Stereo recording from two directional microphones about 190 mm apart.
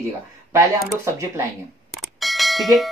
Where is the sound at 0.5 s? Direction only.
15° right (ahead or behind).